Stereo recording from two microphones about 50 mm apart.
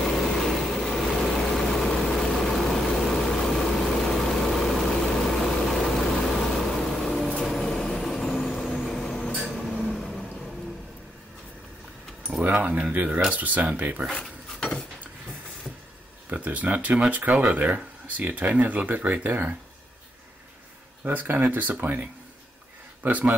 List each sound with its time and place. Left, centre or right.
0.0 s vehicle: centre
12.4 s a sound: right
13.3 s speech: right
14.1 s dishes: centre
16.3 s speech: right
21.0 s speech: right